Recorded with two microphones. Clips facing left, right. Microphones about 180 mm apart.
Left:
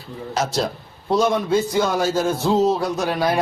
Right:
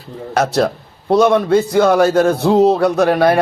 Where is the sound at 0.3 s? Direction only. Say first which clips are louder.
Right 8 dB; 60° right (ahead or behind).